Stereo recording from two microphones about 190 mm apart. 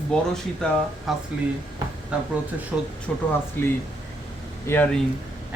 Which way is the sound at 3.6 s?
10° left (ahead or behind).